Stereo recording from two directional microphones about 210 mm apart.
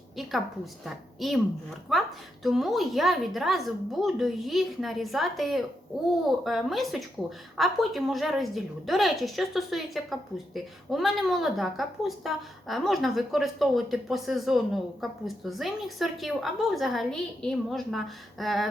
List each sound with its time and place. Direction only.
0.2 s a woman's voice: centre (ahead or behind)